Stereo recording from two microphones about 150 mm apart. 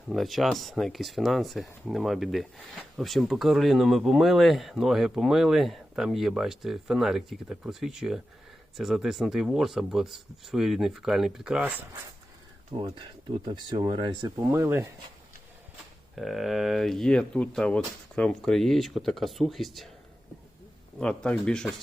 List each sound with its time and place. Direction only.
0.1 s speech: centre (ahead or behind)
12.7 s speech: 40° right (ahead or behind)
14.5 s speech: 15° right (ahead or behind)
16.1 s speech: centre (ahead or behind)
21.0 s speech: 5° left (ahead or behind)